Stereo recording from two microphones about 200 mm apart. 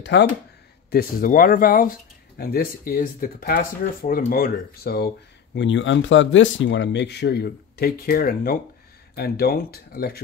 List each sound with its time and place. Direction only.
0.0 s speech: 60° left (ahead or behind)
0.8 s speech: 50° left (ahead or behind)